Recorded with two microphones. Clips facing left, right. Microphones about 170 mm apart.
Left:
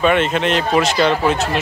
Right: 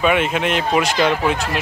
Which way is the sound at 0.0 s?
10° right (ahead or behind).